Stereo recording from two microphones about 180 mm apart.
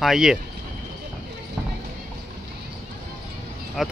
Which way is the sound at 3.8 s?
Centre (ahead or behind).